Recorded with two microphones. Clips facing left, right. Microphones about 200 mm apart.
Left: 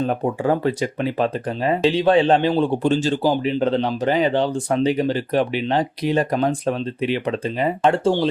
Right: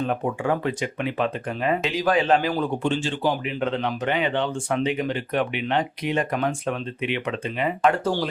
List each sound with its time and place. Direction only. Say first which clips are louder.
0.0 s speech: left 4 dB; 35° left (ahead or behind)